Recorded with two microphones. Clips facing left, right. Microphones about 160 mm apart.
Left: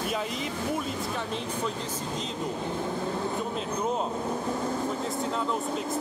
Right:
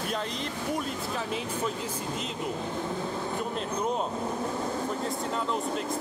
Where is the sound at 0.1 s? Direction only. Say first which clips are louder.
Left 1 dB; 5° left (ahead or behind).